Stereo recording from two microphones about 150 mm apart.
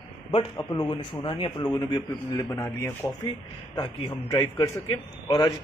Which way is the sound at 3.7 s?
30° left (ahead or behind).